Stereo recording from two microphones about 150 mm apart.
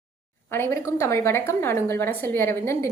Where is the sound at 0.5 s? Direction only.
15° left (ahead or behind).